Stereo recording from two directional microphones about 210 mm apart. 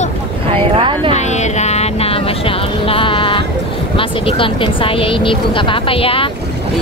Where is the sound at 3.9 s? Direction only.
25° left (ahead or behind).